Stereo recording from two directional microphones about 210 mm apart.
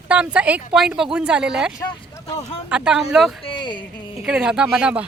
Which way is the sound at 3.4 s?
25° left (ahead or behind).